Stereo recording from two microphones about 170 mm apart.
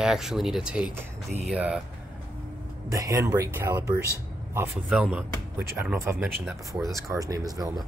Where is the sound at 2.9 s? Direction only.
20° right (ahead or behind).